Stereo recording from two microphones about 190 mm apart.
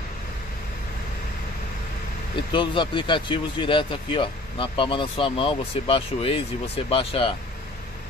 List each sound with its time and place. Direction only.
2.5 s speech: 25° left (ahead or behind)